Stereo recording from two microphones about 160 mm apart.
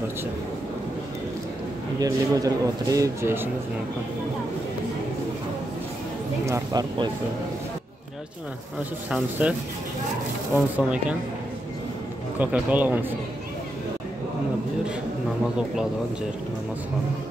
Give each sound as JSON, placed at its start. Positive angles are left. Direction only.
{"t": 2.0, "sound": "speech", "side_deg": -20}
{"t": 6.4, "sound": "speech", "side_deg": -20}
{"t": 9.1, "sound": "speech", "side_deg": -10}
{"t": 10.8, "sound": "speech", "side_deg": -5}
{"t": 12.4, "sound": "speech", "side_deg": -10}